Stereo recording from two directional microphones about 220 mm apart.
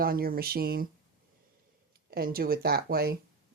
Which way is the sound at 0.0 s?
40° right (ahead or behind).